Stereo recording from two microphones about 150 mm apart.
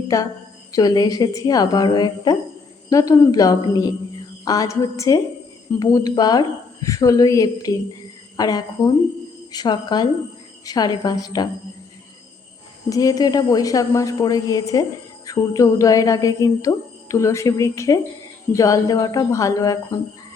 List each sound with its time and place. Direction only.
0.1 s speech: 20° left (ahead or behind)
12.9 s speech: 25° left (ahead or behind)